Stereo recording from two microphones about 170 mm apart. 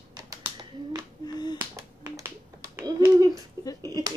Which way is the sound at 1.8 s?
20° right (ahead or behind).